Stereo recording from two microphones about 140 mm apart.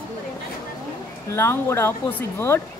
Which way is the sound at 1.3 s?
20° left (ahead or behind).